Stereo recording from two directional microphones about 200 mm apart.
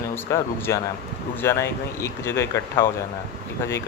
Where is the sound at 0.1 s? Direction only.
15° left (ahead or behind).